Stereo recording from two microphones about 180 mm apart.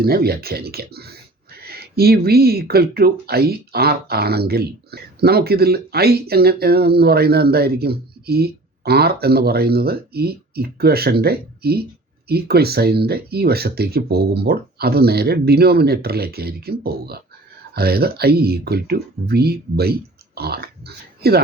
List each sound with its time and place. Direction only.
0.0 s speech: 60° right (ahead or behind)